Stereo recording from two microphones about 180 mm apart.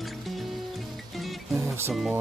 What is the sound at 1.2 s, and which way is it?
Music, centre (ahead or behind).